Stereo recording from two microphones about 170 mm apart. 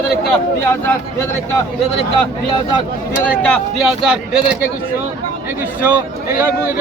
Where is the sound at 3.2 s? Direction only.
10° left (ahead or behind).